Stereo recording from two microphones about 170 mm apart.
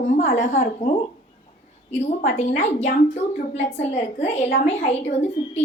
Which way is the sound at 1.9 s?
40° left (ahead or behind).